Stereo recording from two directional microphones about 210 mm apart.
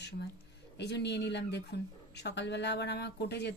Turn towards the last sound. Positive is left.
turn(degrees=50)  # may be behind; listen again after turning